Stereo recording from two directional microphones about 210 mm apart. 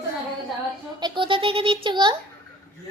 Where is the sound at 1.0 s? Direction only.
20° right (ahead or behind).